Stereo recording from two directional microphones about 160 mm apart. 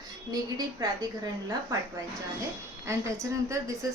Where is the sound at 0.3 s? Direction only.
25° right (ahead or behind).